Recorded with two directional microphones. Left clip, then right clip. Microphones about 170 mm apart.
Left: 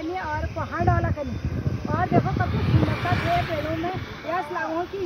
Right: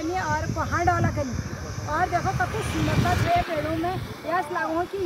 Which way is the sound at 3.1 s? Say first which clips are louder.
Right 1 dB; 50° right (ahead or behind).